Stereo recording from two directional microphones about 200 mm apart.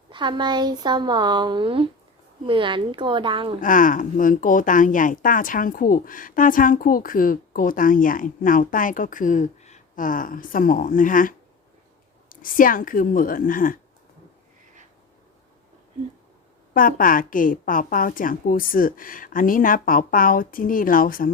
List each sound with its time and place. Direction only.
0.1 s speech: 25° right (ahead or behind)
3.6 s a woman's voice: 40° left (ahead or behind)
16.7 s a woman's voice: 45° left (ahead or behind)